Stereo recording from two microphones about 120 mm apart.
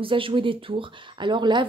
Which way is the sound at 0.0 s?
45° right (ahead or behind).